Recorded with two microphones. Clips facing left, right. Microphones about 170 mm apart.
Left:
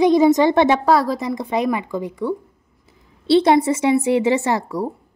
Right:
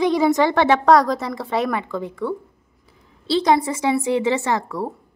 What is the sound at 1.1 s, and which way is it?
A woman's voice, 15° left (ahead or behind).